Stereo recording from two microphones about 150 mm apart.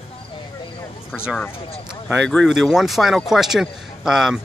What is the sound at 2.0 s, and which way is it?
Speech, centre (ahead or behind).